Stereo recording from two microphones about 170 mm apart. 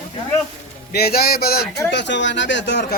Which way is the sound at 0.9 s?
65° left (ahead or behind).